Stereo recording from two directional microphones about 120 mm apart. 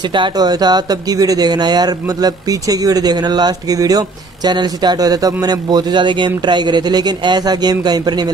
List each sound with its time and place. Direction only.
0.1 s speech: 35° right (ahead or behind)